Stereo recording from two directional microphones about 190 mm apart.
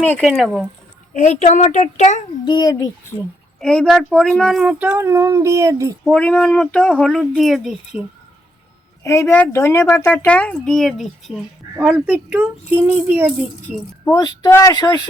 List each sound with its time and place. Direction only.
0.2 s speech: centre (ahead or behind)
1.1 s a woman's voice: 40° left (ahead or behind)
2.4 s a child's voice: 20° left (ahead or behind)
3.6 s speech: 5° left (ahead or behind); by 6.0 s 15° right (ahead or behind)
6.1 s speech: 5° left (ahead or behind)
9.0 s speech: 15° left (ahead or behind); by 13.3 s 10° right (ahead or behind)
13.7 s speech: 10° left (ahead or behind)